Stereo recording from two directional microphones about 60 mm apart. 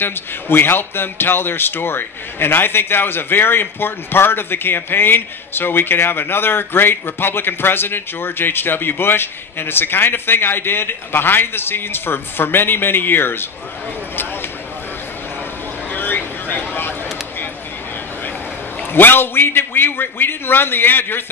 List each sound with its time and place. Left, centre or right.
0.0 s a man's voice: left
15.9 s vehicle: left
18.9 s a man's voice: left